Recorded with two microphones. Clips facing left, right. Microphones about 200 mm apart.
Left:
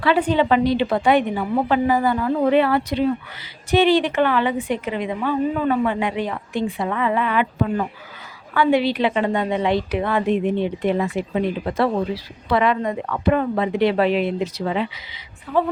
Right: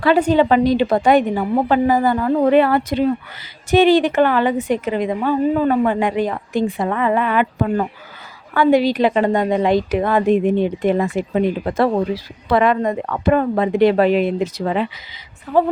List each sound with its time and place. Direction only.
0.0 s a woman's voice: 45° right (ahead or behind)